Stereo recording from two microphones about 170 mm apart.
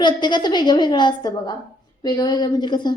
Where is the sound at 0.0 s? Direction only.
25° left (ahead or behind).